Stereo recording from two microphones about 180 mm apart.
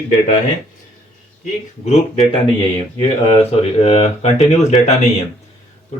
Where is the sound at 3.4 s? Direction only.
35° left (ahead or behind).